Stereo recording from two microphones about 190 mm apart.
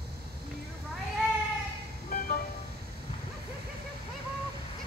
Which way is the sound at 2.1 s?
50° left (ahead or behind).